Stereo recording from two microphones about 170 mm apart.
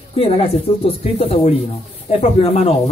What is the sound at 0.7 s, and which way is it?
Speech, 35° left (ahead or behind).